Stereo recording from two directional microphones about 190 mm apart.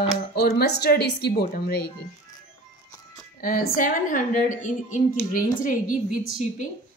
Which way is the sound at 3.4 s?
50° left (ahead or behind).